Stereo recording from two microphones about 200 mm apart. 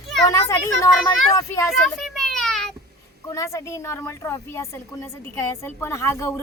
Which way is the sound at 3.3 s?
15° left (ahead or behind).